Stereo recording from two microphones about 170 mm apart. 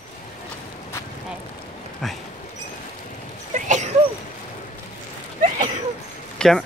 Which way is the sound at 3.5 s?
45° right (ahead or behind).